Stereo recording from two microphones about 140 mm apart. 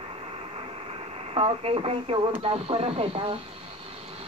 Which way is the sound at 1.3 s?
45° right (ahead or behind).